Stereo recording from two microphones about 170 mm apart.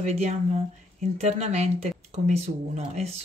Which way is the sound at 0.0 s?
40° right (ahead or behind).